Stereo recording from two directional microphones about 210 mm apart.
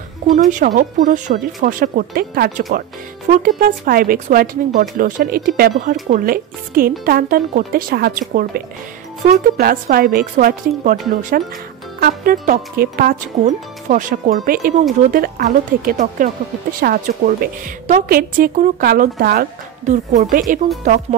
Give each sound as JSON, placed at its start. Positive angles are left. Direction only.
{"t": 0.5, "sound": "a woman's voice", "side_deg": -35}
{"t": 19.9, "sound": "speech", "side_deg": -35}